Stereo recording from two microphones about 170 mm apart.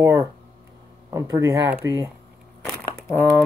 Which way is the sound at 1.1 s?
15° right (ahead or behind).